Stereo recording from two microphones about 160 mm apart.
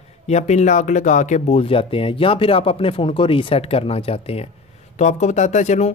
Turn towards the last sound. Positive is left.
turn(degrees=45)  # may be behind; listen again after turning